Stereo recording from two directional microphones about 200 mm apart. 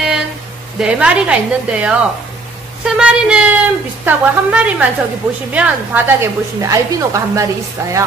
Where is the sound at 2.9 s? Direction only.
5° right (ahead or behind).